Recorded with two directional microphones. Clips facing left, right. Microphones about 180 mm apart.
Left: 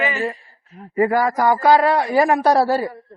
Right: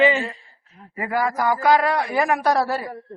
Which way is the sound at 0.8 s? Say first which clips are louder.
Left 6 dB; 40° left (ahead or behind).